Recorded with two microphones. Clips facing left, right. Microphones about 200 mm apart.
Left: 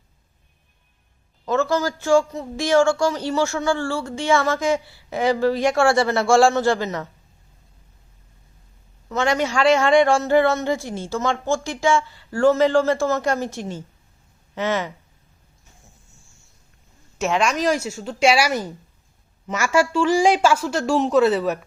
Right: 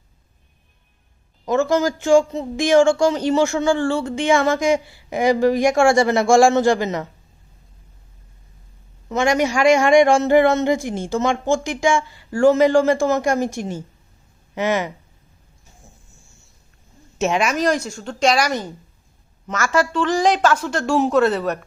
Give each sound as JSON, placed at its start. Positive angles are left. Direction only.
{"t": 1.5, "sound": "a man's voice", "side_deg": -15}
{"t": 9.0, "sound": "a man's voice", "side_deg": -15}
{"t": 17.2, "sound": "a woman's voice", "side_deg": -20}
{"t": 17.4, "sound": "a woman's voice", "side_deg": 0}